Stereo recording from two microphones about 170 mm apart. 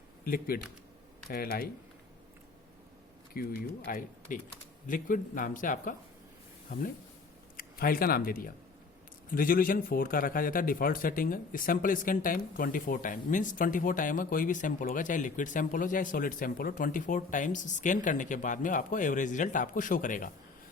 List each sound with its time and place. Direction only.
0.3 s speech: 60° left (ahead or behind)
3.3 s a man's voice: 60° left (ahead or behind)
7.5 s a man's voice: 60° left (ahead or behind)